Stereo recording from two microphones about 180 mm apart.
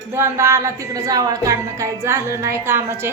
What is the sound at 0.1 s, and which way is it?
A woman's voice, 15° right (ahead or behind).